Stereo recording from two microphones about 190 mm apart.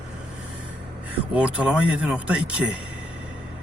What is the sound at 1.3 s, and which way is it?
Speech, 5° right (ahead or behind).